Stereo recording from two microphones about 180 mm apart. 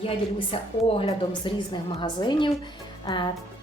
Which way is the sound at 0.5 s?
30° left (ahead or behind).